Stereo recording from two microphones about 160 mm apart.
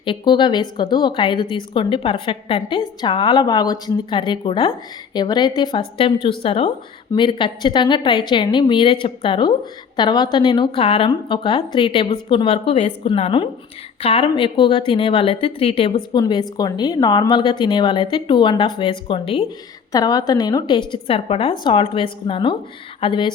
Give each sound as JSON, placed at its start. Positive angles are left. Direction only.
{"t": 0.0, "sound": "a woman's voice", "side_deg": 30}
{"t": 16.1, "sound": "a woman's voice", "side_deg": 25}
{"t": 19.9, "sound": "a woman's voice", "side_deg": 25}